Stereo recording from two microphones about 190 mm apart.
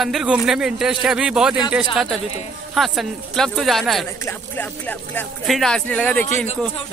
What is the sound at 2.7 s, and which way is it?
Speech, centre (ahead or behind).